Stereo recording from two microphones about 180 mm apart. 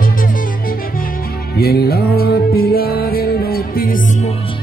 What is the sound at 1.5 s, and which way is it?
Music, 60° left (ahead or behind).